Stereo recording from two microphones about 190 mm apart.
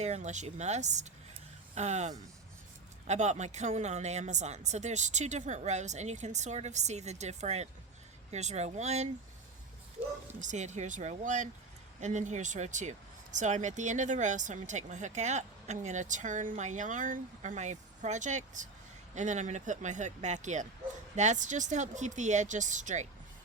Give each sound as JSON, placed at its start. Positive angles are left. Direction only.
{"t": 0.0, "sound": "speech", "side_deg": -35}
{"t": 10.4, "sound": "speech", "side_deg": -40}